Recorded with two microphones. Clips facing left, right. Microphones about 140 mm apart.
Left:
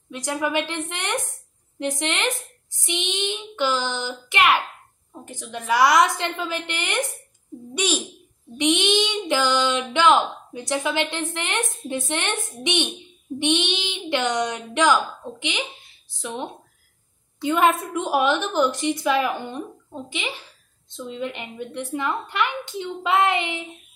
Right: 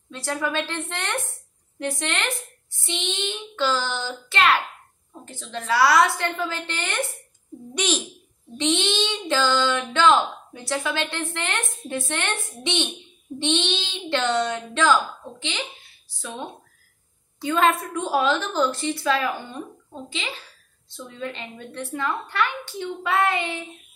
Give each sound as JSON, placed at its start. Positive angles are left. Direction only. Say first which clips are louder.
{"t": 0.1, "sound": "child singing", "louder": "left 2 dB", "side_deg": 15}
{"t": 7.7, "sound": "speech", "louder": "left 1 dB", "side_deg": 10}
{"t": 8.5, "sound": "child singing", "louder": "left 3 dB", "side_deg": 15}
{"t": 16.1, "sound": "speech", "louder": "left 3 dB", "side_deg": 20}
{"t": 17.5, "sound": "child singing", "louder": "left 1 dB", "side_deg": 20}